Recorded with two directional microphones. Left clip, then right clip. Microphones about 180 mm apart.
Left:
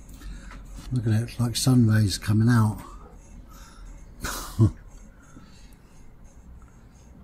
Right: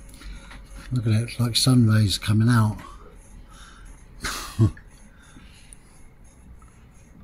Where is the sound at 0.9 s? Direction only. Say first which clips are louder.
Right 2 dB; 10° right (ahead or behind).